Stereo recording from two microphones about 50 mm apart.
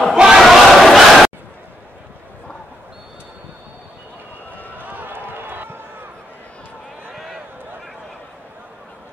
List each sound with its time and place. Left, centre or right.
0.1 s battle cry: centre
0.4 s battle cry: centre
4.8 s run: right
7.1 s a sound: centre